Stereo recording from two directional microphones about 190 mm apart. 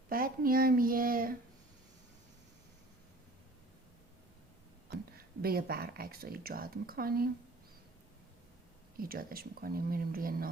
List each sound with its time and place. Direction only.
0.1 s a sound: 50° right (ahead or behind)
5.1 s speech: 55° right (ahead or behind)
9.0 s speech: 50° right (ahead or behind)